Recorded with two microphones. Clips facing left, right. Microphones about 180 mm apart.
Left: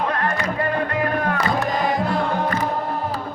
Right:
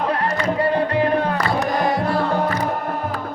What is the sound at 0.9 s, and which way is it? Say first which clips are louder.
Music: right 3 dB; 30° right (ahead or behind).